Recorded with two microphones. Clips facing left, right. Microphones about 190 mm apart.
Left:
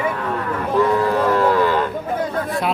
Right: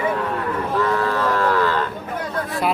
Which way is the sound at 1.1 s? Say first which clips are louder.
Left 3 dB; 20° left (ahead or behind).